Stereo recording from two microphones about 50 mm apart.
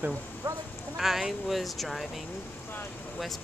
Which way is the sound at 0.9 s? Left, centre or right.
Centre.